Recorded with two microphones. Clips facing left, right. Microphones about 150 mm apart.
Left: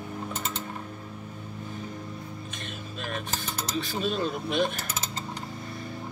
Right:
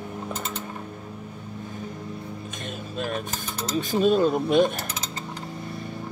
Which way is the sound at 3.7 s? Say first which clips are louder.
Right 9 dB; 45° right (ahead or behind).